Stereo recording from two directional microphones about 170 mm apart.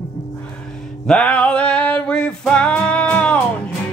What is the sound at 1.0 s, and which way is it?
Music, 5° left (ahead or behind).